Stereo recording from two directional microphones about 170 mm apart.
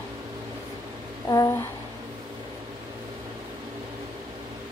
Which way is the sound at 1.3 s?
15° left (ahead or behind).